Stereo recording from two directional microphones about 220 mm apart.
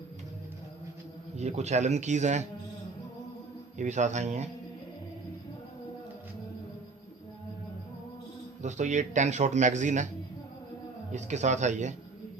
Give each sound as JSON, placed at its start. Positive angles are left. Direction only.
{"t": 1.4, "sound": "a man's voice", "side_deg": -30}
{"t": 3.8, "sound": "a man's voice", "side_deg": -35}
{"t": 8.6, "sound": "a man's voice", "side_deg": -35}
{"t": 11.1, "sound": "a man's voice", "side_deg": -30}